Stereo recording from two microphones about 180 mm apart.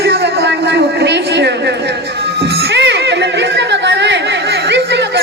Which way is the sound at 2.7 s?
70° right (ahead or behind).